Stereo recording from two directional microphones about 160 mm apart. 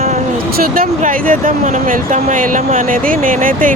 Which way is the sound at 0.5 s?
65° right (ahead or behind).